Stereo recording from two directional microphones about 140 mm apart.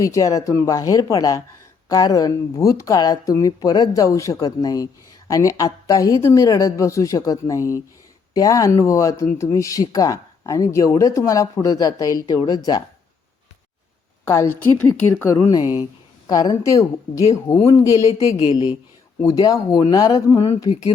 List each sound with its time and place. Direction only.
0.0 s speech: 25° left (ahead or behind)
14.3 s speech: 20° left (ahead or behind)
18.3 s speech: 45° left (ahead or behind)
18.5 s speech: 30° left (ahead or behind)